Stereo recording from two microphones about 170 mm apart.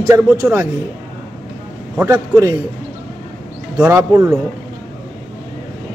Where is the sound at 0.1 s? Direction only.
15° right (ahead or behind).